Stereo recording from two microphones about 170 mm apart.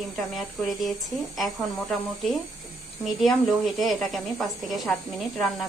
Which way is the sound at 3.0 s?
Centre (ahead or behind).